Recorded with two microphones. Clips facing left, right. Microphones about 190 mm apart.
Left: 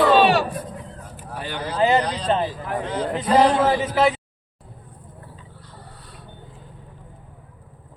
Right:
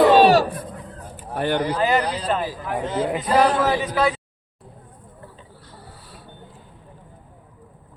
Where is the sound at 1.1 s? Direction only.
55° right (ahead or behind).